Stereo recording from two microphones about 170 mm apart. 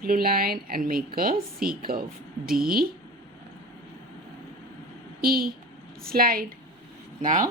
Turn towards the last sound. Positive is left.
turn(degrees=-50)  # may be behind; listen again after turning